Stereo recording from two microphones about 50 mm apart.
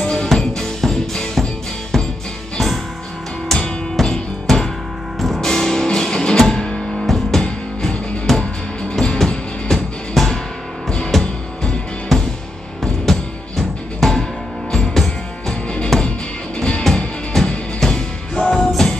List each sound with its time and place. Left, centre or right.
0.0 s music: centre
4.0 s music: centre
7.0 s music: centre
7.4 s music: left
8.3 s music: centre
16.5 s music: centre
17.3 s music: centre